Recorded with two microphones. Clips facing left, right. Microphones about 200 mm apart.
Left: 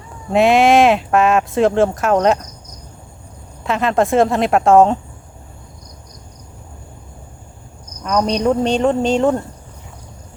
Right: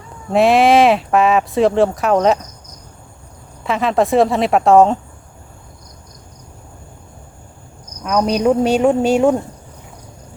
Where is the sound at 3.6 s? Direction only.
Centre (ahead or behind).